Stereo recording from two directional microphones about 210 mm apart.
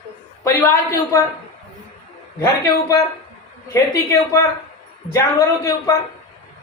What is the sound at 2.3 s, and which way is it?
A man's voice, 15° left (ahead or behind).